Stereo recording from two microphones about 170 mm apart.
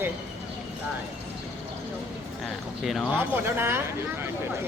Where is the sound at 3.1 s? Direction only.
10° right (ahead or behind).